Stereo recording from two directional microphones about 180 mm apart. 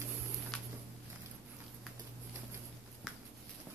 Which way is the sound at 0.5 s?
Centre (ahead or behind).